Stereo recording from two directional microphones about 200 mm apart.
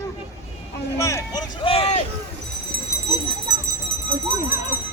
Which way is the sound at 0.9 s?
15° left (ahead or behind).